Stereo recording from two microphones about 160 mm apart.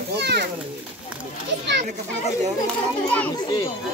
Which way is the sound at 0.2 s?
90° right.